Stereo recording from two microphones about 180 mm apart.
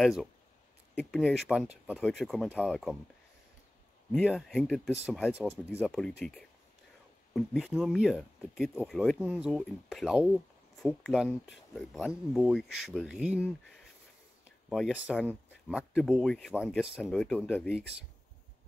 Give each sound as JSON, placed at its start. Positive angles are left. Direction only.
{"t": 0.0, "sound": "speech", "side_deg": 0}
{"t": 4.1, "sound": "speech", "side_deg": 0}
{"t": 14.7, "sound": "speech", "side_deg": -5}